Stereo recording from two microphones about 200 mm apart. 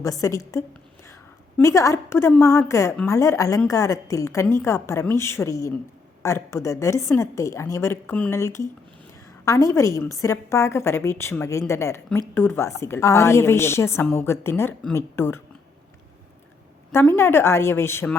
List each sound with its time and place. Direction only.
0.0 s a woman's voice: 15° left (ahead or behind)
16.9 s a woman's voice: 10° left (ahead or behind)